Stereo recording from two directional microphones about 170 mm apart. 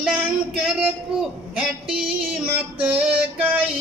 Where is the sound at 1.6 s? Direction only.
5° right (ahead or behind).